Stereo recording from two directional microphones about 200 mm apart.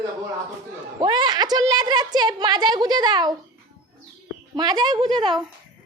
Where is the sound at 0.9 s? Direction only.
20° right (ahead or behind).